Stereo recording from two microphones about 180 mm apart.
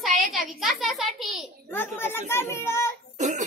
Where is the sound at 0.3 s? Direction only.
Centre (ahead or behind).